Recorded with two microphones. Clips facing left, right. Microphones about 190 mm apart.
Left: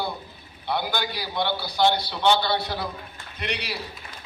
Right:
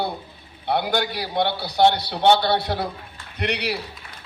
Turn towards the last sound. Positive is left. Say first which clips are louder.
# right 6 dB
turn(degrees=-65)  # may be behind; listen again after turning